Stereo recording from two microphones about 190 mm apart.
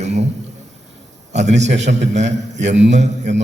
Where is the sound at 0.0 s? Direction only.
35° right (ahead or behind).